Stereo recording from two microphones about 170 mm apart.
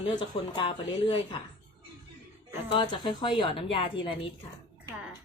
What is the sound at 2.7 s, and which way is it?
A woman's voice, 25° left (ahead or behind).